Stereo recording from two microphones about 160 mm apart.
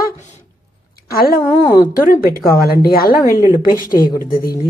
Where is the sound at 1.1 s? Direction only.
70° left (ahead or behind).